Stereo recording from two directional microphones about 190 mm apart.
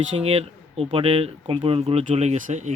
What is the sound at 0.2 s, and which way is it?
Speech, 35° right (ahead or behind).